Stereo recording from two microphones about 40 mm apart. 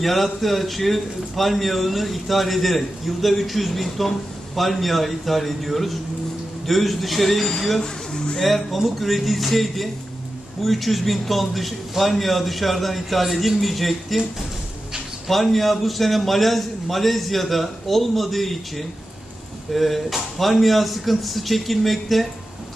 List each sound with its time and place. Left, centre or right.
0.0 s a man's voice: centre
7.8 s speech: centre
8.4 s a man's voice: centre
15.2 s a man's voice: centre